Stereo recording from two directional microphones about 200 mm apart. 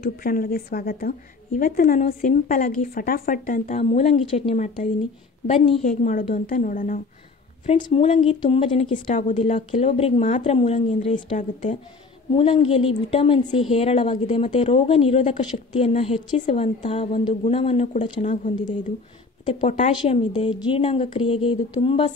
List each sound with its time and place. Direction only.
0.0 s a woman's voice: 45° left (ahead or behind)
7.8 s a woman's voice: 30° left (ahead or behind)
8.9 s a woman's voice: 40° left (ahead or behind)
12.4 s a woman's voice: 25° left (ahead or behind)
20.0 s a woman's voice: 25° left (ahead or behind)